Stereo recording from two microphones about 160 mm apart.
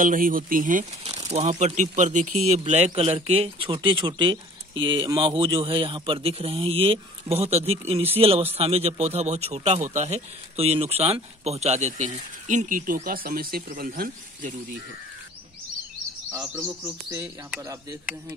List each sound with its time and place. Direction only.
0.0 s speech: 60° right (ahead or behind)
1.2 s speech: 45° right (ahead or behind); by 14.8 s 60° right (ahead or behind)
16.3 s speech: 15° right (ahead or behind)